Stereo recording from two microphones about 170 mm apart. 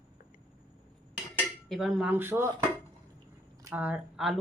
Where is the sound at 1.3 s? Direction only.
Centre (ahead or behind).